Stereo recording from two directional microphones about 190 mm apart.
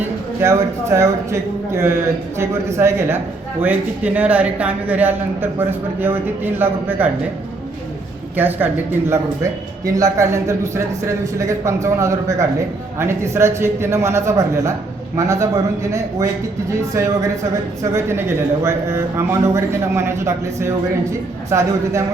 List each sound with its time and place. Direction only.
0.4 s speech: 15° right (ahead or behind)
8.4 s speech: 10° right (ahead or behind)
17.9 s speech: 15° right (ahead or behind)